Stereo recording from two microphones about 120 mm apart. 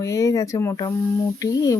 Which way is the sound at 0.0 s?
25° left (ahead or behind).